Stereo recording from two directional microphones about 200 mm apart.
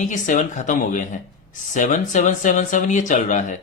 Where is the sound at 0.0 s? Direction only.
40° left (ahead or behind).